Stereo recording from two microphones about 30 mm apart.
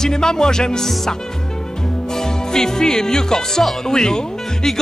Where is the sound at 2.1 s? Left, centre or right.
Centre.